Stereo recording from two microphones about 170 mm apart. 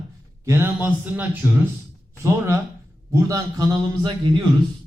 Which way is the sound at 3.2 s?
20° right (ahead or behind).